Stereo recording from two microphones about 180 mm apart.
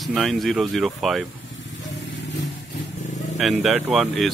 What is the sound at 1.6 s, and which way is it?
Vehicle, 80° left.